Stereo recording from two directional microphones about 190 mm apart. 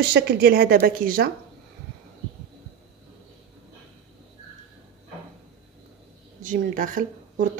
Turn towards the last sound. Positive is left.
turn(degrees=-45)  # may be behind; listen again after turning